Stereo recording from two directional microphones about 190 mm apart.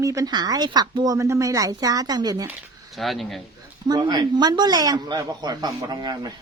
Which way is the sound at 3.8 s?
20° right (ahead or behind).